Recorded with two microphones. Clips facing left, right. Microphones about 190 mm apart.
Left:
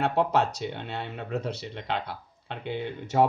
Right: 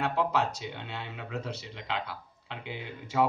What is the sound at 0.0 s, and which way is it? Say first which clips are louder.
Speech: left 4 dB; 60° left (ahead or behind).